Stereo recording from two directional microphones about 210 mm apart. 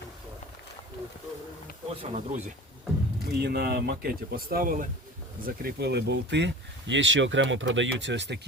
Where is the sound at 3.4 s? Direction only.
50° right (ahead or behind).